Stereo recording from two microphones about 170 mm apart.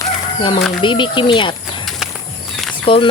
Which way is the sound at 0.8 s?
30° left (ahead or behind).